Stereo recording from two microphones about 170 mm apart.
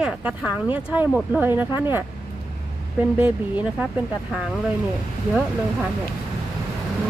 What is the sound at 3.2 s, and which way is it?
Speech, 10° right (ahead or behind).